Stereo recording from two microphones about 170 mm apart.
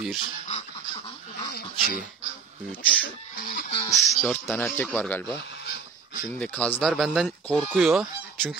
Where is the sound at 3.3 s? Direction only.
55° left (ahead or behind).